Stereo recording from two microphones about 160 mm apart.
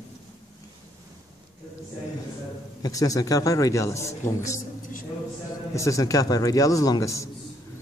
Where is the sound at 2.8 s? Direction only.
20° left (ahead or behind).